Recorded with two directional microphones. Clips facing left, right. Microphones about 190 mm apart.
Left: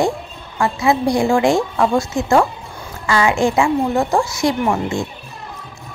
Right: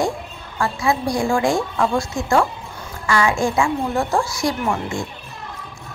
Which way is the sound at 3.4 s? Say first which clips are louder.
Left 4 dB; 20° left (ahead or behind).